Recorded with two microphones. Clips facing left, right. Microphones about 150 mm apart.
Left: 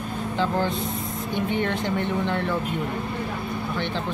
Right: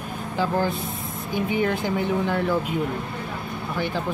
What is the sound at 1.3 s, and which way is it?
Speech, 5° right (ahead or behind).